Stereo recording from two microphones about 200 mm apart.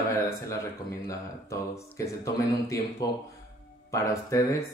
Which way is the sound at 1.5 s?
15° left (ahead or behind).